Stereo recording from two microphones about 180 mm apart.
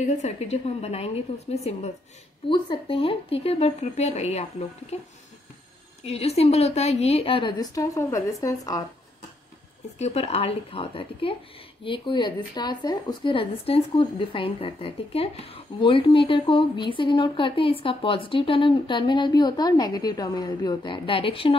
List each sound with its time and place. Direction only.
0.0 s a woman's voice: 40° left (ahead or behind); by 8.8 s 20° left (ahead or behind)
9.9 s a woman's voice: 35° left (ahead or behind)